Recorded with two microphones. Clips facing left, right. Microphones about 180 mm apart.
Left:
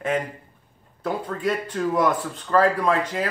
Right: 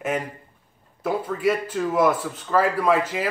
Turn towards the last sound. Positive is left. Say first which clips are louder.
# right 2 dB
turn(degrees=-5)  # may be behind; listen again after turning